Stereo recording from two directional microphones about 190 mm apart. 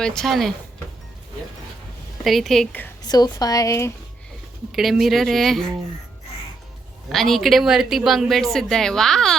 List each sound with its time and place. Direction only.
0.0 s speech: 5° left (ahead or behind)
2.2 s speech: centre (ahead or behind)
3.0 s speech: 20° left (ahead or behind)
4.7 s speech: centre (ahead or behind)
7.1 s speech: centre (ahead or behind)